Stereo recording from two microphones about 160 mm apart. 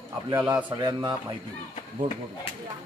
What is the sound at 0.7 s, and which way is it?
Speech, 25° right (ahead or behind).